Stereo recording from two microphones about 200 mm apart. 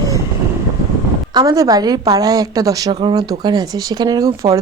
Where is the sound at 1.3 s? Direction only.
20° right (ahead or behind).